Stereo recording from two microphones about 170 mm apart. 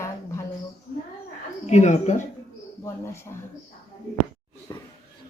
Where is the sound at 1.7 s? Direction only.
45° left (ahead or behind).